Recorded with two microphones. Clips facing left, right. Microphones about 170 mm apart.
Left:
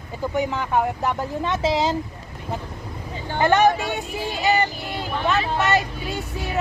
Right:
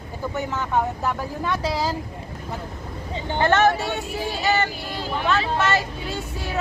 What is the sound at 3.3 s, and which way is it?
Speech, 15° left (ahead or behind).